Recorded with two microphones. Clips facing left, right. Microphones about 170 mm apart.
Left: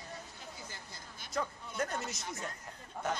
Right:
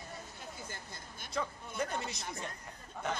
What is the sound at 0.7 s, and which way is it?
Speech, 50° right (ahead or behind).